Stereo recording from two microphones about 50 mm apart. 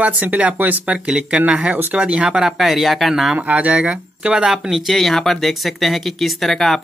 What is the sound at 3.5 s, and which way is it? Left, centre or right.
Speech, right.